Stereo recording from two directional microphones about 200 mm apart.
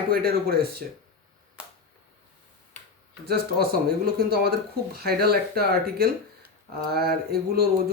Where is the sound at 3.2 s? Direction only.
50° right (ahead or behind).